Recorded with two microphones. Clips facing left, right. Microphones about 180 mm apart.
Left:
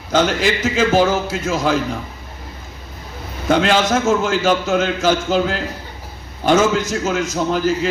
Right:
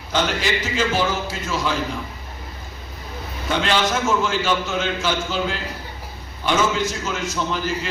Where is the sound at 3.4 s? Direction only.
45° left (ahead or behind).